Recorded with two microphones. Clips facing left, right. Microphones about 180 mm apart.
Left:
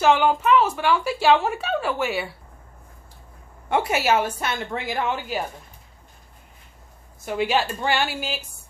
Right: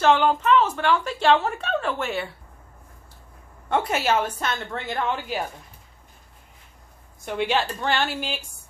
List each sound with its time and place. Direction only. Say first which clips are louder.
0.0 s a woman's voice: left 1 dB; 10° left (ahead or behind)
3.6 s a woman's voice: left 1 dB; 10° left (ahead or behind)
7.2 s a woman's voice: left 1 dB; 5° left (ahead or behind)